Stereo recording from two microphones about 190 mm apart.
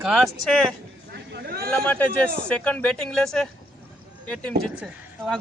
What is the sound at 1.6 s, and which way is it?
Speech, 10° left (ahead or behind).